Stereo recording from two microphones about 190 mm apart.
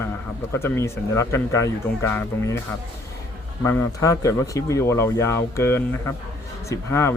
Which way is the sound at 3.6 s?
15° left (ahead or behind).